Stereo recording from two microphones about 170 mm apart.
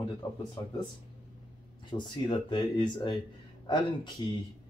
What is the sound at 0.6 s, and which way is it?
Speech, 25° left (ahead or behind).